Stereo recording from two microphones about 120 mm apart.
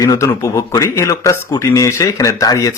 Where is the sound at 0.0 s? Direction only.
30° left (ahead or behind).